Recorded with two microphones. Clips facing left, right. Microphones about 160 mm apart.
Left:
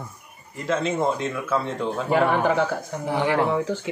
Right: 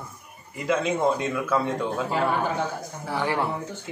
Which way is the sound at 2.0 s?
70° left (ahead or behind).